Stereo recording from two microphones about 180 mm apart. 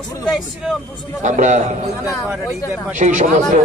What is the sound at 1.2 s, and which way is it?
Speech, 45° right (ahead or behind).